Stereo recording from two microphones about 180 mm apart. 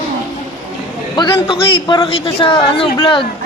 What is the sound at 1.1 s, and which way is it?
A man's voice, 25° left (ahead or behind).